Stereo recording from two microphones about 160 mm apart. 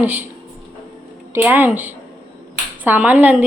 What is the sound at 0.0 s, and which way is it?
Speech, 10° right (ahead or behind).